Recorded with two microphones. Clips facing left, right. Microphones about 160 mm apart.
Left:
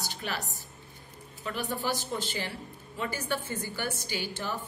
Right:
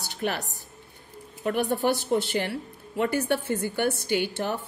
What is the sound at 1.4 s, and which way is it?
A woman's voice, 60° right (ahead or behind).